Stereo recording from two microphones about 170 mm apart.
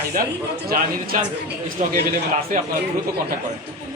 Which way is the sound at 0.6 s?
60° right (ahead or behind).